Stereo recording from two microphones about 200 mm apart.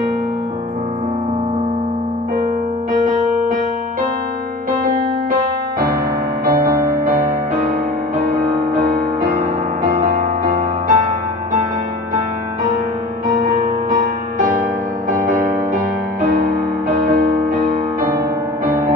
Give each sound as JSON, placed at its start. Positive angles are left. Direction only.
{"t": 2.9, "sound": "music", "side_deg": -40}
{"t": 9.8, "sound": "music", "side_deg": -40}
{"t": 13.3, "sound": "music", "side_deg": -40}
{"t": 18.7, "sound": "music", "side_deg": -20}